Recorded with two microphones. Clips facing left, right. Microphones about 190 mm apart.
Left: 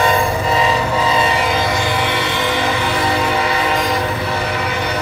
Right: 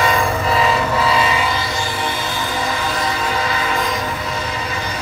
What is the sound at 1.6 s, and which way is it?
Music, 65° left (ahead or behind).